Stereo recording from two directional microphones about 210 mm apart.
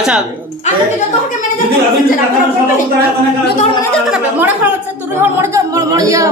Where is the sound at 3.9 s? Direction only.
5° right (ahead or behind).